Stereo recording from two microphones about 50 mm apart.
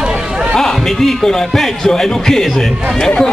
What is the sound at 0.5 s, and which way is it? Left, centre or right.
A man's voice, centre.